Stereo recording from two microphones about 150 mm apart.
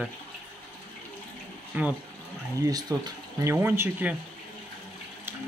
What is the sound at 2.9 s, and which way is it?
Speech, 20° right (ahead or behind).